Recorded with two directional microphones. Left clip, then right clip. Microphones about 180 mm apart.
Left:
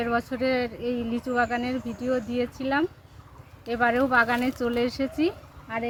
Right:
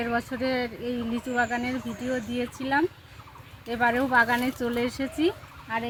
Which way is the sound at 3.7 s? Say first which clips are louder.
Left 1 dB; 10° left (ahead or behind).